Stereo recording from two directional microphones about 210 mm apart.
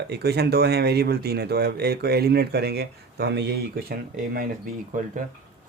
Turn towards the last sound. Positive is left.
turn(degrees=-40)  # may be behind; listen again after turning